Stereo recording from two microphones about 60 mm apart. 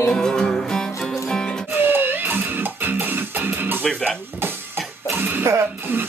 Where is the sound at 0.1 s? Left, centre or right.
Centre.